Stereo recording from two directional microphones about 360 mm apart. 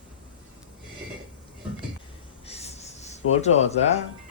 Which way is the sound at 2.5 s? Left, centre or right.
Centre.